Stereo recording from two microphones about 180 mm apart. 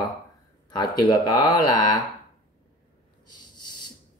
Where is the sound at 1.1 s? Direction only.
20° left (ahead or behind).